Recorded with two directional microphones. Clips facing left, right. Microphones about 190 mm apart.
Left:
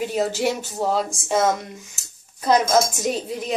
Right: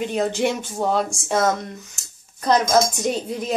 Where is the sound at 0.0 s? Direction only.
5° left (ahead or behind).